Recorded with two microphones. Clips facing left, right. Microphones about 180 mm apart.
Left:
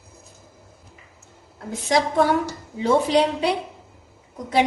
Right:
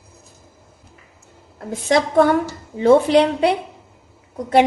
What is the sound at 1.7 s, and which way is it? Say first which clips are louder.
A woman's voice: right 3 dB; 55° right (ahead or behind).